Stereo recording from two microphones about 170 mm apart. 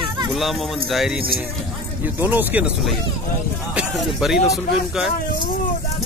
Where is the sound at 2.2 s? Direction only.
10° right (ahead or behind).